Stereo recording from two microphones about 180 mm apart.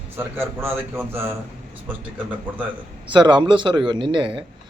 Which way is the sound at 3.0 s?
25° right (ahead or behind).